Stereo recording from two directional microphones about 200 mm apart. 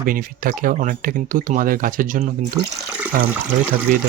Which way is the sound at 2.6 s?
20° right (ahead or behind).